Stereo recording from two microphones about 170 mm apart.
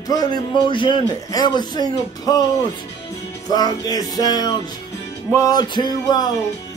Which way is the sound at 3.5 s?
20° left (ahead or behind).